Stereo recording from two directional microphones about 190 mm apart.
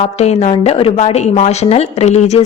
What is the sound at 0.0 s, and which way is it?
A woman's voice, 35° left (ahead or behind).